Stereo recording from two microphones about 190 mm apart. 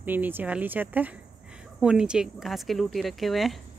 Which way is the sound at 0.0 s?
10° right (ahead or behind).